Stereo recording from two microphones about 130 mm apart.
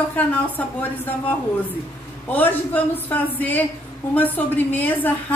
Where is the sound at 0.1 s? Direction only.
10° left (ahead or behind).